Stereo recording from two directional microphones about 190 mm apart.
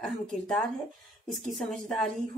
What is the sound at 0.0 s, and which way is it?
A woman's voice, centre (ahead or behind).